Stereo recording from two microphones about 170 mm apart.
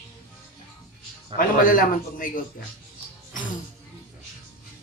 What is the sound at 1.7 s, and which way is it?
Speech, 55° left (ahead or behind).